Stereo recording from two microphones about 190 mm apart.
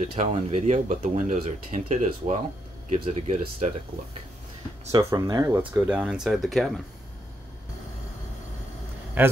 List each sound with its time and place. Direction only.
0.0 s speech: 35° right (ahead or behind)
4.9 s speech: 20° right (ahead or behind)
5.8 s speech: 10° right (ahead or behind)
9.2 s a man's voice: 10° right (ahead or behind)